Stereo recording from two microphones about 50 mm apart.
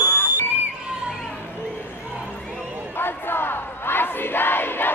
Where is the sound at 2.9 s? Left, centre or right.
Left.